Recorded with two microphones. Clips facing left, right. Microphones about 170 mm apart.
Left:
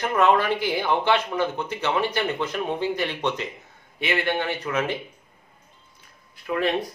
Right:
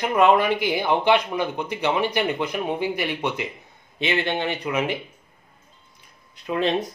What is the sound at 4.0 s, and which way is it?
Speech, 20° right (ahead or behind).